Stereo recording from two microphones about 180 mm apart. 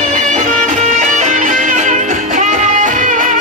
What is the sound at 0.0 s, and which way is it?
Music, 45° right (ahead or behind).